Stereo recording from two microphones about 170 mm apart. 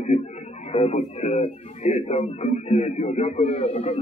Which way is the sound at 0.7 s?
40° left (ahead or behind).